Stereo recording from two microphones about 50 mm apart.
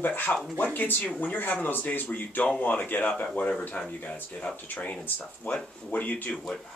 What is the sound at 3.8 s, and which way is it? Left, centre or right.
Speech, centre.